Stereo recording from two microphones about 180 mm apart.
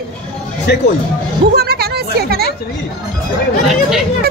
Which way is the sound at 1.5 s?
60° right (ahead or behind).